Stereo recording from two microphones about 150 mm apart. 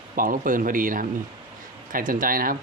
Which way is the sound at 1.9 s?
65° right (ahead or behind).